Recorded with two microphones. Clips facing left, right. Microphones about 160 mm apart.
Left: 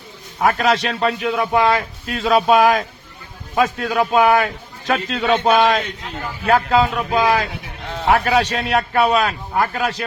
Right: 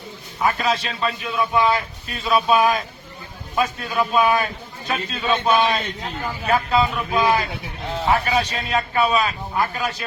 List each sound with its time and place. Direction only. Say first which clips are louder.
0.4 s a man's voice: left 4 dB; 85° left
4.9 s a man's voice: left 5 dB; 90° left
6.4 s a man's voice: left 4 dB; 80° left; by 10.1 s 65° left (ahead or behind)